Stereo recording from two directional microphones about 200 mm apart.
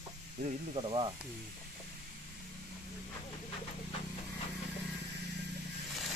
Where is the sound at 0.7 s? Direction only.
25° right (ahead or behind).